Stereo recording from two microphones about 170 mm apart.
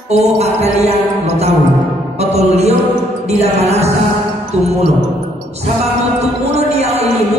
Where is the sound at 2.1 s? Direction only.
40° right (ahead or behind).